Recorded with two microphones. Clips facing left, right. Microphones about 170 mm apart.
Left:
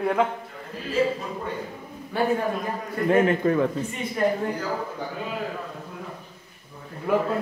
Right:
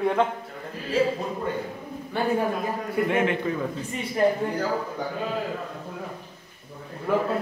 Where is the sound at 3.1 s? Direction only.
40° left (ahead or behind).